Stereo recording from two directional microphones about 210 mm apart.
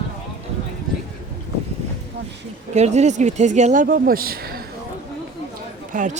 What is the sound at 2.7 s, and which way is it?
Speech, 30° right (ahead or behind).